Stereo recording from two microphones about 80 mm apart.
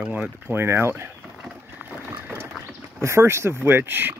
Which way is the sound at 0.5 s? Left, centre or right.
Right.